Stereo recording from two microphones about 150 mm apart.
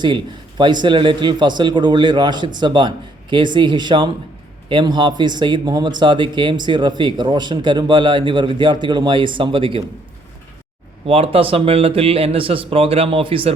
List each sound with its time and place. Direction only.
0.0 s speech: 30° right (ahead or behind)
11.0 s speech: 40° right (ahead or behind)